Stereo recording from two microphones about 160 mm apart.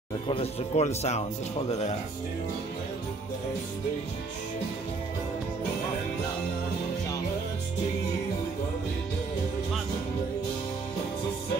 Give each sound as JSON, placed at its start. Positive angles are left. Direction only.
{"t": 0.3, "sound": "speech", "side_deg": 40}